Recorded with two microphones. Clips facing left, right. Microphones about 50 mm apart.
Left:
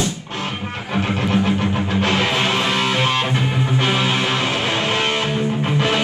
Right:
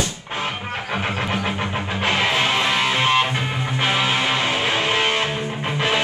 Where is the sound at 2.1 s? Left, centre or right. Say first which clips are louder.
Right 2 dB; centre.